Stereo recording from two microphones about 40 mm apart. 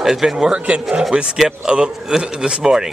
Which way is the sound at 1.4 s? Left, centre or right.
Centre.